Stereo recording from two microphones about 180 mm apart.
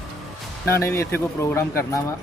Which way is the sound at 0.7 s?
15° left (ahead or behind).